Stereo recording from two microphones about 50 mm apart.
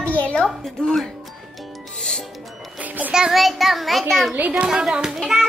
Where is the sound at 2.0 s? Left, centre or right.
Centre.